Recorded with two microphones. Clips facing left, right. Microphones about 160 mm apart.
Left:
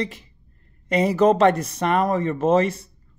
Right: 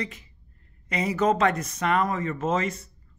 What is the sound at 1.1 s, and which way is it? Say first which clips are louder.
Speech: left 5 dB; 30° left (ahead or behind).